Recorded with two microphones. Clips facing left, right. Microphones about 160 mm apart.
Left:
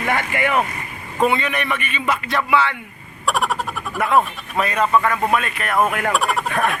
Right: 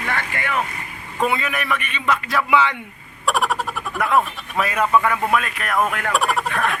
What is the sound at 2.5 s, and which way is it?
Speech, 15° right (ahead or behind).